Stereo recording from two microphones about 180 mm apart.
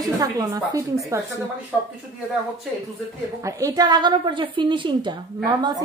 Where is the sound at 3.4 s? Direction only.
20° right (ahead or behind).